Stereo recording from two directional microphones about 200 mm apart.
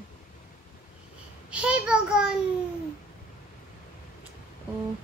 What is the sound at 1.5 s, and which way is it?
Speech, 5° right (ahead or behind).